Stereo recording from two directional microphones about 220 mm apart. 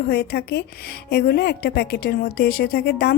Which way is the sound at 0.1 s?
45° left (ahead or behind).